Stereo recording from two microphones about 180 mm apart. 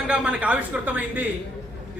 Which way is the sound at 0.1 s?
5° right (ahead or behind).